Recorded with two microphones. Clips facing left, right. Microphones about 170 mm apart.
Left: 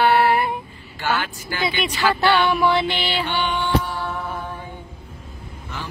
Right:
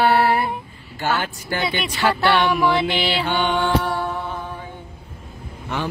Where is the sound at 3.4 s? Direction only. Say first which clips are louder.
Right 3 dB; 60° right (ahead or behind).